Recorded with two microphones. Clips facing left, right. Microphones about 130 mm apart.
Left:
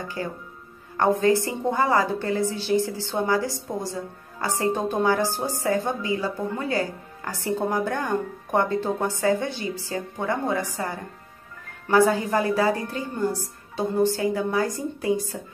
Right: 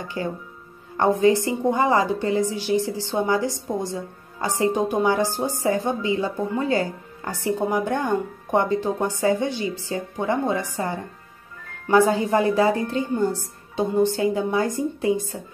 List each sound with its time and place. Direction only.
0.9 s a woman's voice: 20° right (ahead or behind)
11.9 s a woman's voice: 20° right (ahead or behind)